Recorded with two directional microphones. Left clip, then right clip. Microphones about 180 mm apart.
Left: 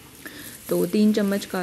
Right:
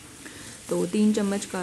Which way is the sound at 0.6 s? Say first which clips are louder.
Left 3 dB; 15° left (ahead or behind).